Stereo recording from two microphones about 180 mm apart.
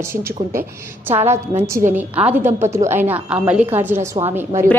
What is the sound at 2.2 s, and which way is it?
A woman's voice, 10° right (ahead or behind).